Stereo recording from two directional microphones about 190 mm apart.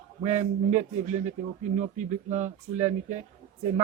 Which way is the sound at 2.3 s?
40° right (ahead or behind).